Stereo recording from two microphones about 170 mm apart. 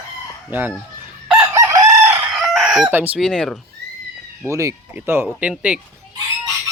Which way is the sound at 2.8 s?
10° right (ahead or behind).